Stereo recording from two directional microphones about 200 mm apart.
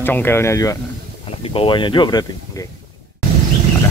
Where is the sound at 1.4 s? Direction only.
25° left (ahead or behind).